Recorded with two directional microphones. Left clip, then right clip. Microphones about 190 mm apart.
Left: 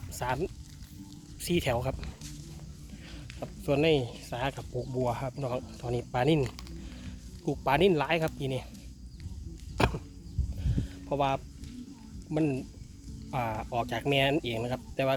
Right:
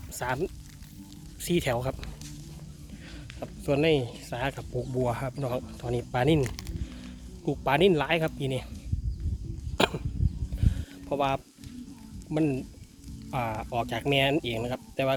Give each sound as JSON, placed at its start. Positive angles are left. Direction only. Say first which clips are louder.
{"t": 0.1, "sound": "speech", "louder": "right 2 dB", "side_deg": -15}
{"t": 3.4, "sound": "speech", "louder": "right 1 dB", "side_deg": -5}
{"t": 6.4, "sound": "typing", "louder": "right 2 dB", "side_deg": -15}
{"t": 7.4, "sound": "speech", "louder": "right 2 dB", "side_deg": -5}
{"t": 9.7, "sound": "a sound", "louder": "right 3 dB", "side_deg": -20}
{"t": 12.3, "sound": "speech", "louder": "right 2 dB", "side_deg": -10}